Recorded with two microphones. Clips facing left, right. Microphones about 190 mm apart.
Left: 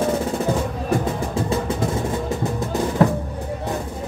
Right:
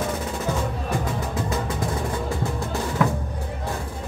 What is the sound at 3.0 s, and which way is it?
Drum, 35° left (ahead or behind).